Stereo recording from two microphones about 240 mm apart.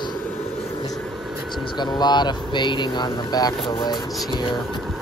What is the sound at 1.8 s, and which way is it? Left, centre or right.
Speech, centre.